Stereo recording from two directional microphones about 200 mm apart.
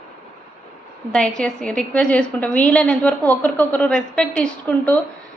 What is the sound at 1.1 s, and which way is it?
A woman's voice, 5° left (ahead or behind).